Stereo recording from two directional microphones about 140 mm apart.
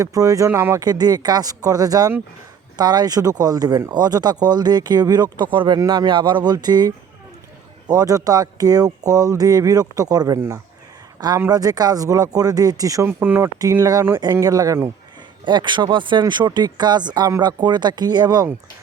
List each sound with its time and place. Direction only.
0.0 s speech: 25° right (ahead or behind)